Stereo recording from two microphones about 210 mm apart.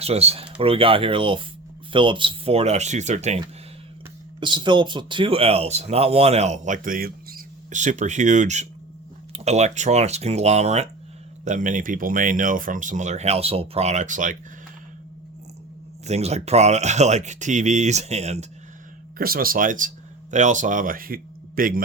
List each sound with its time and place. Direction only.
0.0 s speech: 30° right (ahead or behind)
4.4 s speech: 20° right (ahead or behind); by 14.3 s 35° right (ahead or behind)
16.0 s speech: 30° right (ahead or behind)
19.2 s speech: 45° right (ahead or behind)